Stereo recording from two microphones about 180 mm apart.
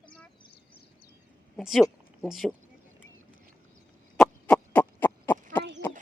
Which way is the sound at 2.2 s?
Centre (ahead or behind).